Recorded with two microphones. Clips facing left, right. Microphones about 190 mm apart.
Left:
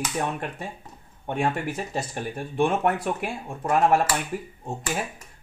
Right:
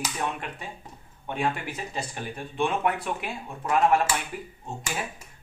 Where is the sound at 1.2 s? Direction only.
45° left (ahead or behind).